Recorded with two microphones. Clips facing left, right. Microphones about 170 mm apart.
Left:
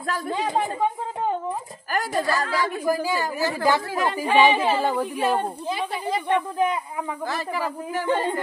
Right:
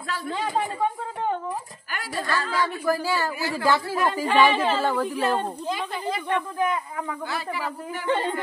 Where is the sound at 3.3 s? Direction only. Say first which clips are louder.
Left 3 dB; 40° left (ahead or behind).